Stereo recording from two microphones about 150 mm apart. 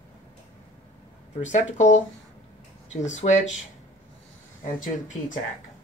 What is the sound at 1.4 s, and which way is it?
Speech, 55° left (ahead or behind).